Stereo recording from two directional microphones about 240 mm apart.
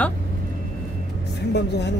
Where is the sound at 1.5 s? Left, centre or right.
Left.